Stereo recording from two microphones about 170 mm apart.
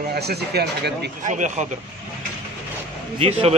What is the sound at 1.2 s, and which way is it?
Speech, 45° right (ahead or behind).